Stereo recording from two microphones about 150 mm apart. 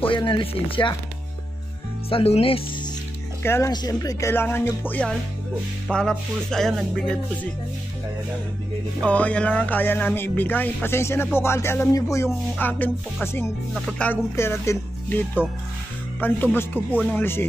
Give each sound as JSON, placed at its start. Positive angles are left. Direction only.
{"t": 0.0, "sound": "chopping", "side_deg": 35}
{"t": 2.0, "sound": "chopping", "side_deg": 40}
{"t": 3.4, "sound": "speech", "side_deg": 15}
{"t": 5.9, "sound": "music", "side_deg": 5}
{"t": 9.0, "sound": "speech", "side_deg": 10}
{"t": 13.7, "sound": "music", "side_deg": 5}
{"t": 14.3, "sound": "speech", "side_deg": 15}